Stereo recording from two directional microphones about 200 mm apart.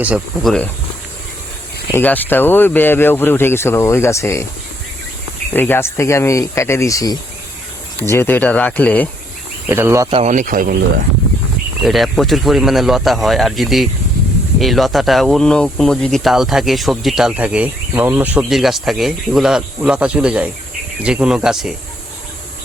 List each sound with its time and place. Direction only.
0.0 s speech: 5° right (ahead or behind)
1.9 s speech: 10° left (ahead or behind)
5.5 s speech: 10° left (ahead or behind)
9.6 s speech: 15° right (ahead or behind)
10.1 s speech: 30° right (ahead or behind)
11.8 s speech: centre (ahead or behind)